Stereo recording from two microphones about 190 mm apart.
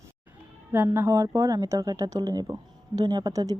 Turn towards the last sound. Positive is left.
turn(degrees=-20)  # may be behind; listen again after turning